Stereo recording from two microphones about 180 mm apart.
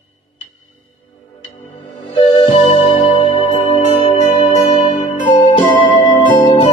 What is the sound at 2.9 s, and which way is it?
Music, 30° left (ahead or behind).